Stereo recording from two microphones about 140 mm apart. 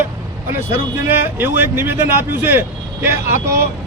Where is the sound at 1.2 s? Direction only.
15° right (ahead or behind).